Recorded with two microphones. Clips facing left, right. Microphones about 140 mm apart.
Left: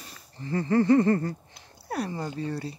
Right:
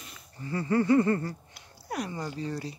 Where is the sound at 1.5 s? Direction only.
30° left (ahead or behind).